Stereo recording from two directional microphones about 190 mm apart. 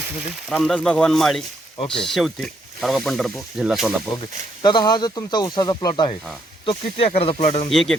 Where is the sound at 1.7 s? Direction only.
25° left (ahead or behind).